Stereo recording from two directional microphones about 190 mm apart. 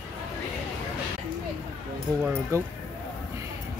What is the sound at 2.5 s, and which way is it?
Speech, 15° right (ahead or behind).